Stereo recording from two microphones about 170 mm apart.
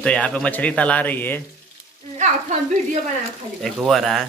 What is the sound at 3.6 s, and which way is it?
Speech, centre (ahead or behind).